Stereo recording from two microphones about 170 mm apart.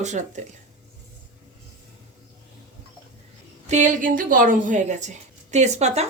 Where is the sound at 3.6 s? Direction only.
45° right (ahead or behind).